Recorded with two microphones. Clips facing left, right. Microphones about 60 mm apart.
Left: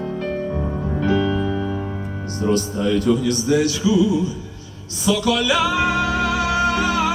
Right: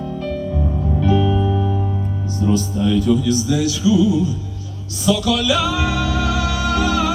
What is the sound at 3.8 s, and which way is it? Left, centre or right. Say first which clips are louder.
Music: right 2 dB; left.